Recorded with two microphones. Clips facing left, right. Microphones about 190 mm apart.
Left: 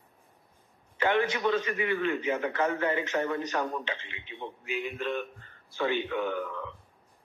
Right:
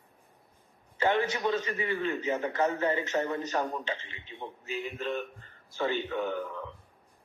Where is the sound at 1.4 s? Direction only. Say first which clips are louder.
Left 2 dB; 15° right (ahead or behind).